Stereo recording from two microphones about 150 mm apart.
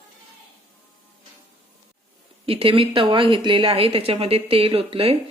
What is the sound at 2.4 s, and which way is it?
A woman's voice, 40° right (ahead or behind).